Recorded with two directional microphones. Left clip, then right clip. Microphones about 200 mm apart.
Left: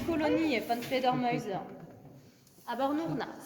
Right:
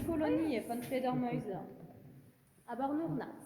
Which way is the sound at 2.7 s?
30° left (ahead or behind).